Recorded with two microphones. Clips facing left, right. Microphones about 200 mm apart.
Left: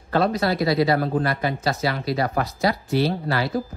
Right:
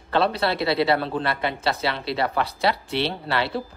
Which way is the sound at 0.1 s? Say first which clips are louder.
Left 1 dB; 30° right (ahead or behind).